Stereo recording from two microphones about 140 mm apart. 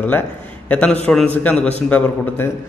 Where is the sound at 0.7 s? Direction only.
10° left (ahead or behind).